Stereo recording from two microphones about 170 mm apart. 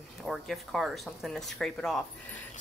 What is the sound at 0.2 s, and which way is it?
Speech, centre (ahead or behind).